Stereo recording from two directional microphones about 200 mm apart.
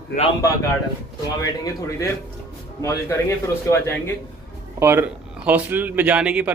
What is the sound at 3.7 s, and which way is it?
Speech, 10° left (ahead or behind).